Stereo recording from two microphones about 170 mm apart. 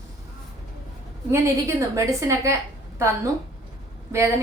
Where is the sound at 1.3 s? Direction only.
15° right (ahead or behind).